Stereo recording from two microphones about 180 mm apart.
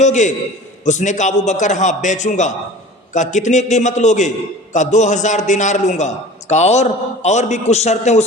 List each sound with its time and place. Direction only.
0.0 s a man's voice: 40° left (ahead or behind)